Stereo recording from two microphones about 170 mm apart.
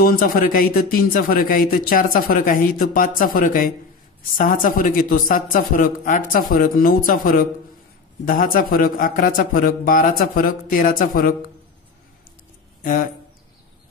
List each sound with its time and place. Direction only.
0.0 s a man's voice: 60° left (ahead or behind)